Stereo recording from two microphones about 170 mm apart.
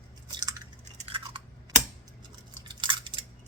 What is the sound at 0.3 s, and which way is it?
Drip, 25° right (ahead or behind).